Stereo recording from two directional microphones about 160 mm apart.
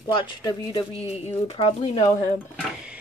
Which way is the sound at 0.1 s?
25° left (ahead or behind).